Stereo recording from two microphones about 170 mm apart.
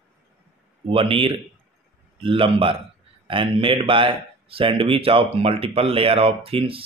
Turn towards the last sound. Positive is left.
turn(degrees=-35)  # may be behind; listen again after turning